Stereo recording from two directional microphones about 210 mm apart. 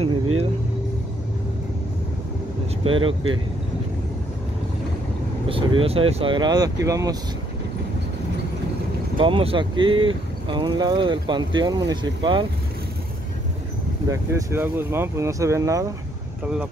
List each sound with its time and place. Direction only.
2.8 s speech: 25° right (ahead or behind)
5.5 s speech: 25° right (ahead or behind)
9.2 s speech: 25° right (ahead or behind)
14.1 s speech: 15° right (ahead or behind)